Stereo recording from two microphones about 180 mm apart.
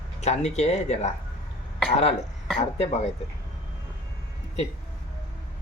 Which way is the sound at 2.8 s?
35° left (ahead or behind).